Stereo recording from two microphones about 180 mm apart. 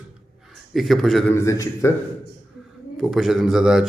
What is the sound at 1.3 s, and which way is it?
Speech, 15° left (ahead or behind).